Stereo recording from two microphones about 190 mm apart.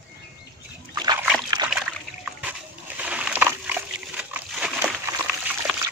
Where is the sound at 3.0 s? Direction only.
5° right (ahead or behind).